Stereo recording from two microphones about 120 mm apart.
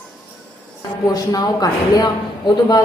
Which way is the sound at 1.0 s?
30° left (ahead or behind).